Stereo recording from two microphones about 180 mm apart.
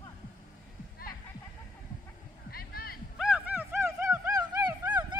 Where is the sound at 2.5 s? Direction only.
55° left (ahead or behind).